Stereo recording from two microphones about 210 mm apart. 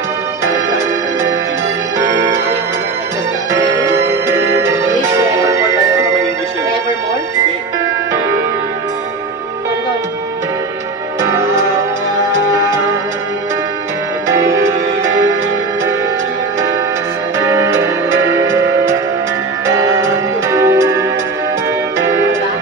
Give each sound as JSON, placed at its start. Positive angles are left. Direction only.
{"t": 2.0, "sound": "music", "side_deg": -15}
{"t": 3.5, "sound": "music", "side_deg": -15}
{"t": 17.4, "sound": "music", "side_deg": -10}